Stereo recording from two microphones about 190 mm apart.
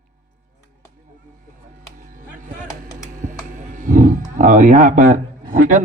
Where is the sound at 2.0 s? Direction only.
45° right (ahead or behind).